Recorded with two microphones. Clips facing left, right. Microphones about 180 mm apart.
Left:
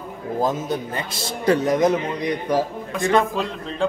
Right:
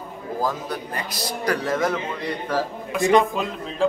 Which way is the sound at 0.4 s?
20° left (ahead or behind).